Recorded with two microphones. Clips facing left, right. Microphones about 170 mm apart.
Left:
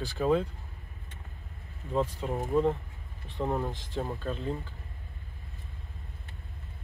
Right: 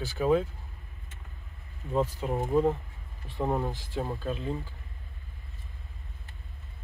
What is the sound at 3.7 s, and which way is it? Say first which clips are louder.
Speech: right 1 dB; 5° right (ahead or behind).